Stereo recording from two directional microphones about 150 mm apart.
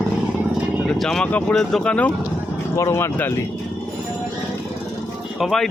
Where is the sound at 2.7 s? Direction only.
20° left (ahead or behind).